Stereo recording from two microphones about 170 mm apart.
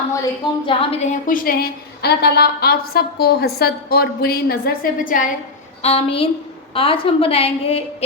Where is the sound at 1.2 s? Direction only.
55° left (ahead or behind).